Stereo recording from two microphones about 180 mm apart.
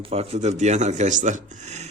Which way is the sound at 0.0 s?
35° right (ahead or behind).